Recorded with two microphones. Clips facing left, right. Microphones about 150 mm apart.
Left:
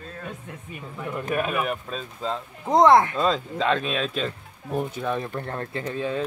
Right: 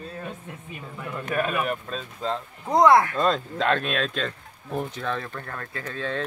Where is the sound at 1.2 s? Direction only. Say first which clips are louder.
Even; 15° left (ahead or behind).